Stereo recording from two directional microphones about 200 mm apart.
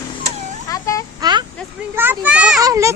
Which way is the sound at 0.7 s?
15° left (ahead or behind).